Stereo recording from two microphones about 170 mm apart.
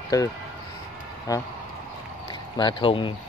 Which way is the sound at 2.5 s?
30° left (ahead or behind).